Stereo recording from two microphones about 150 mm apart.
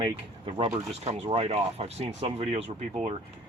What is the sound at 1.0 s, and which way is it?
Speech, 45° right (ahead or behind).